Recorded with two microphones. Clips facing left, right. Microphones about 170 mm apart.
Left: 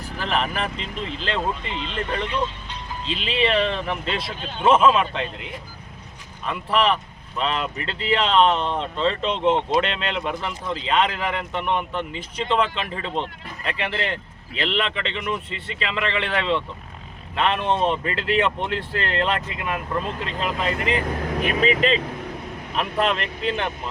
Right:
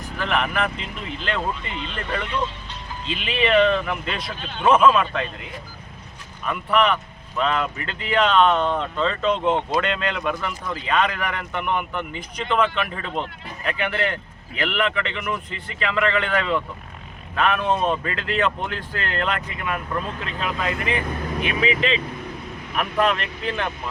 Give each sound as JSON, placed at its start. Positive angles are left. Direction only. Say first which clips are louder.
{"t": 0.0, "sound": "speech", "louder": "right 1 dB", "side_deg": 30}
{"t": 6.4, "sound": "speech", "louder": "right 1 dB", "side_deg": 30}
{"t": 21.4, "sound": "speech", "louder": "left 2 dB", "side_deg": 40}
{"t": 22.7, "sound": "speech", "louder": "right 1 dB", "side_deg": 25}